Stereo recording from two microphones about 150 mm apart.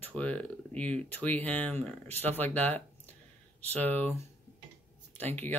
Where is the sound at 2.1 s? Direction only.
45° right (ahead or behind).